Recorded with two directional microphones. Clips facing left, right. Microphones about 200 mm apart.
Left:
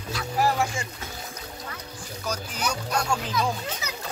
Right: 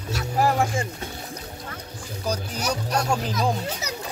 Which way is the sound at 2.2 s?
35° right (ahead or behind).